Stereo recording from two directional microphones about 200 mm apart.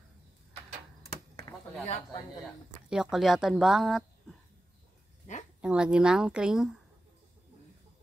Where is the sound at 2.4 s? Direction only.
Centre (ahead or behind).